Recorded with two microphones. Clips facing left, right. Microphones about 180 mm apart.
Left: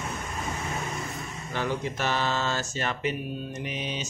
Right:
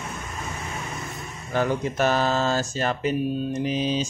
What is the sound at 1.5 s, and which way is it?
Mantra, 45° right (ahead or behind).